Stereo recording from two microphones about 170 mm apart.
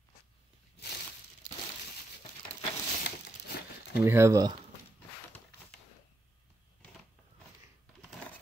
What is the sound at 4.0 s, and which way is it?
Speech, 15° right (ahead or behind).